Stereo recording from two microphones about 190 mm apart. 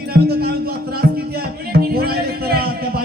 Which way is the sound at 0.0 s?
55° right (ahead or behind).